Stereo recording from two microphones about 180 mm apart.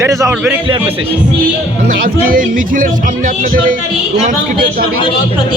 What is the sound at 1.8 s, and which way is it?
A man's voice, 50° right (ahead or behind).